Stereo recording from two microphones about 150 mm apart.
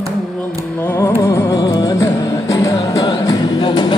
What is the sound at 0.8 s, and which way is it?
Music, 20° left (ahead or behind).